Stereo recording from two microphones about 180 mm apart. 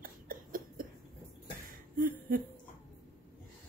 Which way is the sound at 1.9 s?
55° right (ahead or behind).